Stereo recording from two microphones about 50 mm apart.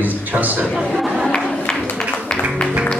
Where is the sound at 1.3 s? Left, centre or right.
Centre.